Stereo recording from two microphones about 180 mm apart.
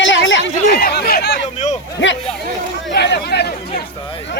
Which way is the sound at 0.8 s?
55° left (ahead or behind).